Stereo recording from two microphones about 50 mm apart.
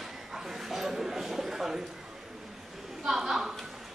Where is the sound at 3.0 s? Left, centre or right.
Centre.